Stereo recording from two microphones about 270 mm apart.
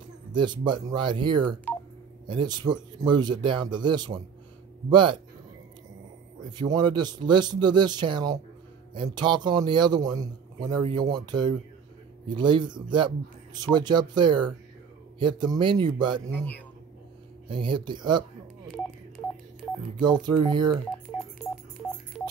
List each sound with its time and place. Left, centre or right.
0.3 s a man's voice: centre
6.5 s a man's voice: centre
16.3 s a man's voice: centre
17.5 s a man's voice: centre
19.8 s a man's voice: centre